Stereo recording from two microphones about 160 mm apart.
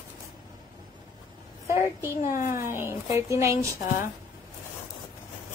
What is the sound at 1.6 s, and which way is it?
A child's voice, 15° right (ahead or behind).